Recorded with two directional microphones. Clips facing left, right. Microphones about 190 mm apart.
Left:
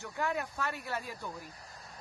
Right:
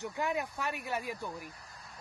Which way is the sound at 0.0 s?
15° right (ahead or behind).